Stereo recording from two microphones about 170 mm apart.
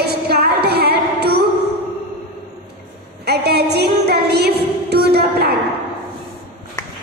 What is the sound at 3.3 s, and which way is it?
Music, 70° right (ahead or behind).